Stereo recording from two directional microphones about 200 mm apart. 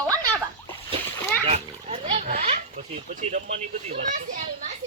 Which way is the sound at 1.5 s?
30° right (ahead or behind).